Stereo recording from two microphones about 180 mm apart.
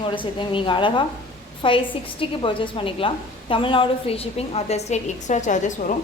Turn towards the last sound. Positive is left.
turn(degrees=45)  # may be behind; listen again after turning